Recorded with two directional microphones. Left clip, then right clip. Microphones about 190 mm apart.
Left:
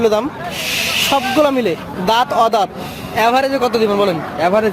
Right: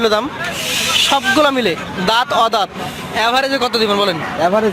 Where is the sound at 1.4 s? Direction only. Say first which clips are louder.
Right 1 dB; centre (ahead or behind).